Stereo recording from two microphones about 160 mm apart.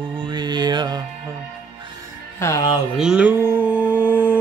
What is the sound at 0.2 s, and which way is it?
Music, 30° right (ahead or behind).